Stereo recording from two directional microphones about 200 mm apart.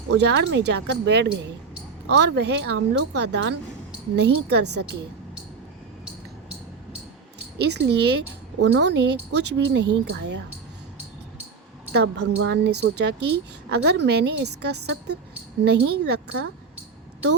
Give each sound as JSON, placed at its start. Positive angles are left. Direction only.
{"t": 0.2, "sound": "speech", "side_deg": -60}
{"t": 7.6, "sound": "speech", "side_deg": -55}
{"t": 11.9, "sound": "speech", "side_deg": -55}
{"t": 14.8, "sound": "speech", "side_deg": -75}
{"t": 15.6, "sound": "speech", "side_deg": -55}